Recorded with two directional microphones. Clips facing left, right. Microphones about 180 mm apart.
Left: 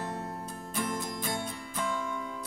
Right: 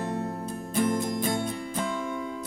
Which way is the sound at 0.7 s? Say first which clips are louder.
Right 8 dB; 20° right (ahead or behind).